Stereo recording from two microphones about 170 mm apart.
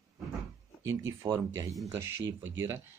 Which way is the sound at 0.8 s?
20° right (ahead or behind).